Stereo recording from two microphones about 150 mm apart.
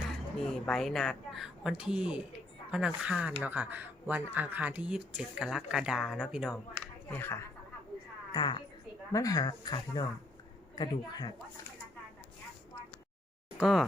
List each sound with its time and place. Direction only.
0.4 s speech: 5° left (ahead or behind)
7.1 s speech: 15° left (ahead or behind)
8.3 s a woman's voice: 30° left (ahead or behind)
13.6 s speech: centre (ahead or behind)